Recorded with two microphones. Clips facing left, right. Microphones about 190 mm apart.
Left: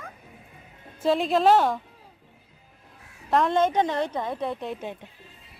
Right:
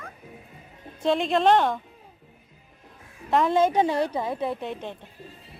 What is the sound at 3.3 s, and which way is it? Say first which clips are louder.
A woman's voice: right 1 dB; 5° right (ahead or behind).